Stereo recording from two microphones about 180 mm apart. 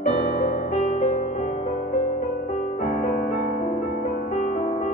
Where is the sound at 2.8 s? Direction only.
45° left (ahead or behind).